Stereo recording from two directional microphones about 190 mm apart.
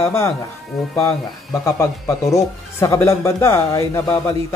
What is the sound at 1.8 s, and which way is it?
Speech, 15° left (ahead or behind).